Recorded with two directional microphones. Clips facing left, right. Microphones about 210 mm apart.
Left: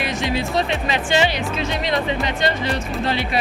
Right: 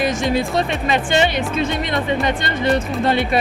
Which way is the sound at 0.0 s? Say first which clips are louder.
Right 4 dB; 45° right (ahead or behind).